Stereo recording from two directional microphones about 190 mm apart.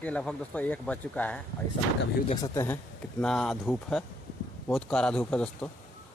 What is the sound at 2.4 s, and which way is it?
Speech, 15° left (ahead or behind).